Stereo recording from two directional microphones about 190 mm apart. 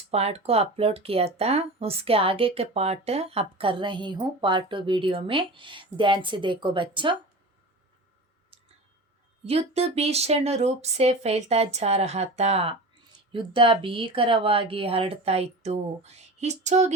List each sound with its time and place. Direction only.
0.1 s speech: 35° right (ahead or behind)
8.5 s clicking: 30° right (ahead or behind)
9.5 s speech: 30° right (ahead or behind)